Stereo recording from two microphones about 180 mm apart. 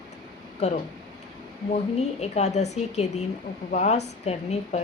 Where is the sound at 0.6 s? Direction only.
35° left (ahead or behind).